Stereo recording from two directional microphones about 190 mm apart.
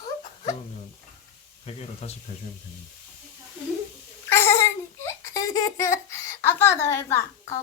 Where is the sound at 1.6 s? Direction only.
30° left (ahead or behind).